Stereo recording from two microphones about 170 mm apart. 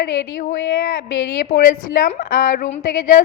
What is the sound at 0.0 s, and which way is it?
A woman's voice, 80° left.